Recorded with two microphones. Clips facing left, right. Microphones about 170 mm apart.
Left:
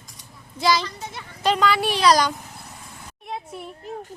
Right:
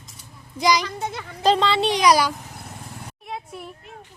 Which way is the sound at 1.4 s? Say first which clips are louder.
Right 2 dB; 30° right (ahead or behind).